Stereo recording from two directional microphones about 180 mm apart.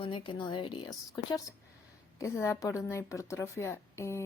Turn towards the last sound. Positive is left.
turn(degrees=15)  # may be behind; listen again after turning